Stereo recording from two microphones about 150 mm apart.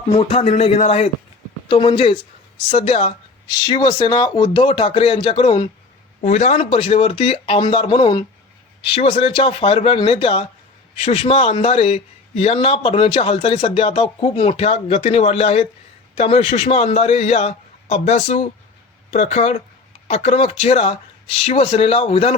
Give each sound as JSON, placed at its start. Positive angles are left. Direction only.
{"t": 0.1, "sound": "speech", "side_deg": 45}
{"t": 1.6, "sound": "speech", "side_deg": 35}
{"t": 6.2, "sound": "speech", "side_deg": 50}